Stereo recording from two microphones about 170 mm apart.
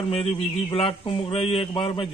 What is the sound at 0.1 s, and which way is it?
A man's voice, 35° left (ahead or behind).